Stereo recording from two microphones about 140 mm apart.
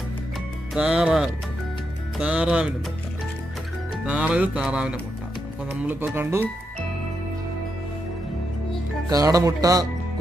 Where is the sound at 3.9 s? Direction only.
10° right (ahead or behind).